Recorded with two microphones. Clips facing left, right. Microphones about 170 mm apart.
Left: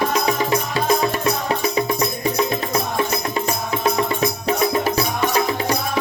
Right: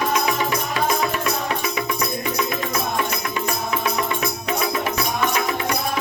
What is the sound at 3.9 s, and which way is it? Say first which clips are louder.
Music: left 4 dB; 30° left (ahead or behind).